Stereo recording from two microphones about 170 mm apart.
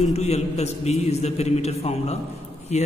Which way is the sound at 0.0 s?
40° left (ahead or behind).